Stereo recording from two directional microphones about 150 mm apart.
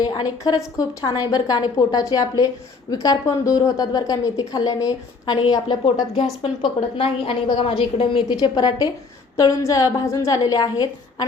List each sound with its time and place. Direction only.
0.0 s a woman's voice: 25° left (ahead or behind)